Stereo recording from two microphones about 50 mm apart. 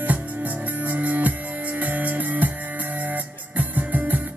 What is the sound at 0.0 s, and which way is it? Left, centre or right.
Music, right.